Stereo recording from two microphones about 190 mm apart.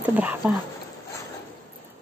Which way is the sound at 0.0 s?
10° right (ahead or behind).